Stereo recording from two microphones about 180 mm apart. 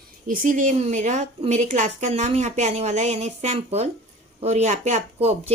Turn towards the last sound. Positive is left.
turn(degrees=-35)  # may be behind; listen again after turning